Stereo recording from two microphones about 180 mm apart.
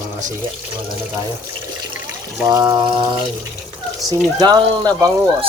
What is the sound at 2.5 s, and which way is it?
Speech, 20° right (ahead or behind).